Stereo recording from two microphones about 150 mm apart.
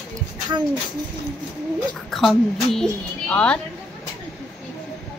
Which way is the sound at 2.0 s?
Centre (ahead or behind).